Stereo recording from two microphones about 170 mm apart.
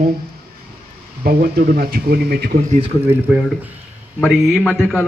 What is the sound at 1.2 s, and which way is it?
Speech, 70° right (ahead or behind).